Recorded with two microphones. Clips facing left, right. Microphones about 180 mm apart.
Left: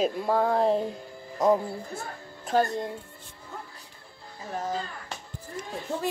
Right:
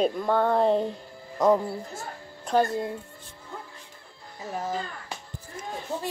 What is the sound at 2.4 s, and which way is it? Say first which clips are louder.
Speech: right 1 dB; centre (ahead or behind).